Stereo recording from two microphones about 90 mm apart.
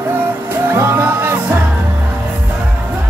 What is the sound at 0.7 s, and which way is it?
Music, 30° right (ahead or behind).